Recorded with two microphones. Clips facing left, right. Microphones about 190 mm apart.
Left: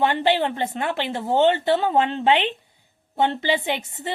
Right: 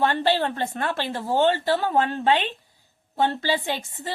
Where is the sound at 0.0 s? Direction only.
15° left (ahead or behind).